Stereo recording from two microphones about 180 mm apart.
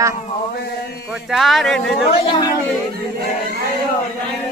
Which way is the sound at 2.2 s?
25° left (ahead or behind).